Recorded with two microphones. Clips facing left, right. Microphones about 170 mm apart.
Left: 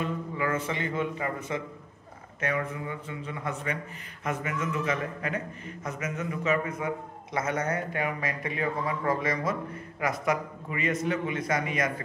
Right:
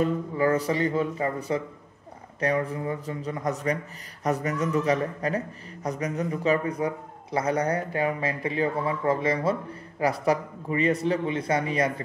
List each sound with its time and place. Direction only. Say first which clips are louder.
0.0 s speech: right 7 dB; 35° right (ahead or behind)